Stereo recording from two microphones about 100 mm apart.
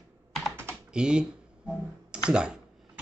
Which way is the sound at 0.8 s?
10° right (ahead or behind).